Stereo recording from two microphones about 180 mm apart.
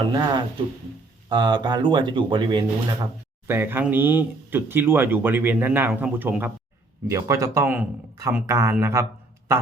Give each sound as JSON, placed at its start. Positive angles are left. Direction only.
{"t": 0.0, "sound": "speech", "side_deg": -25}
{"t": 3.4, "sound": "speech", "side_deg": -10}